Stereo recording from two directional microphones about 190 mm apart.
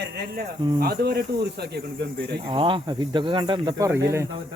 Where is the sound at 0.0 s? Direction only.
60° right (ahead or behind).